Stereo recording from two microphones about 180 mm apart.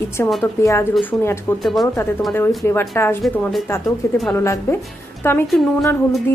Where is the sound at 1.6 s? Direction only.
Centre (ahead or behind).